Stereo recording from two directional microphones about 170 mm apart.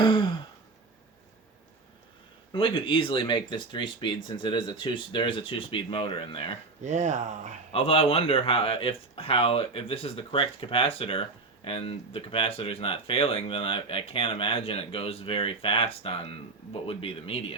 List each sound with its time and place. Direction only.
0.0 s sigh: 30° left (ahead or behind)
2.5 s speech: 30° left (ahead or behind)
6.8 s speech: 45° right (ahead or behind)
7.7 s speech: 35° left (ahead or behind)